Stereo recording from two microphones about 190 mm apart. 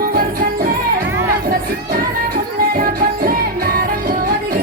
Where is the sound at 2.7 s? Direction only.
50° right (ahead or behind).